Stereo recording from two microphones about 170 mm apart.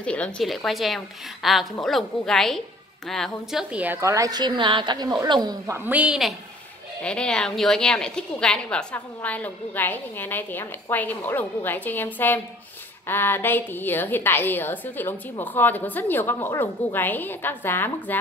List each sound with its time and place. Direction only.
0.0 s a woman's voice: 5° left (ahead or behind); by 5.8 s 25° right (ahead or behind)
5.9 s a woman's voice: 5° right (ahead or behind); by 18.2 s 10° left (ahead or behind)